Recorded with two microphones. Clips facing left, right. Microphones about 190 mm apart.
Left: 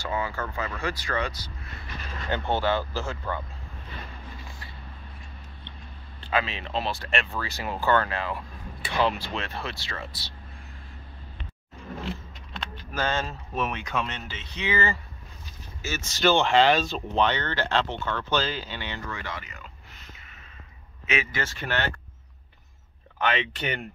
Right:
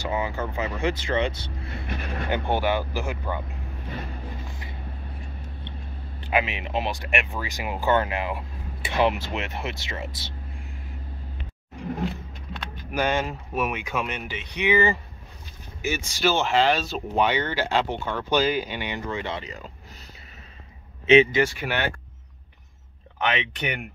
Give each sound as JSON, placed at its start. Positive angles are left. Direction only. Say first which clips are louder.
{"t": 0.0, "sound": "speech", "louder": "right 3 dB", "side_deg": -20}
{"t": 1.9, "sound": "vehicle", "louder": "right 7 dB", "side_deg": -60}
{"t": 2.2, "sound": "speech", "louder": "right 1 dB", "side_deg": -15}
{"t": 6.2, "sound": "speech", "louder": "right 3 dB", "side_deg": -15}
{"t": 12.9, "sound": "speech", "louder": "right 4 dB", "side_deg": -15}
{"t": 21.1, "sound": "speech", "louder": "right 14 dB", "side_deg": -25}
{"t": 21.4, "sound": "speech", "louder": "right 6 dB", "side_deg": -10}
{"t": 23.1, "sound": "speech", "louder": "even", "side_deg": -20}